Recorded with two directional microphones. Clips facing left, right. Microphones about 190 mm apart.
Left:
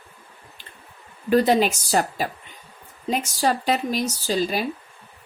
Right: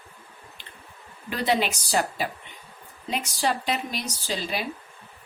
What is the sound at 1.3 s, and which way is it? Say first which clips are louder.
Speech: left 7 dB; 45° left (ahead or behind).